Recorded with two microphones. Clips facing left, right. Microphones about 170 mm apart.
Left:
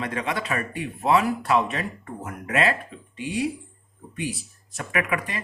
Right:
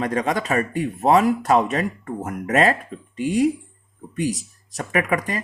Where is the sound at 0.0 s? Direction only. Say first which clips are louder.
Right 6 dB; 40° right (ahead or behind).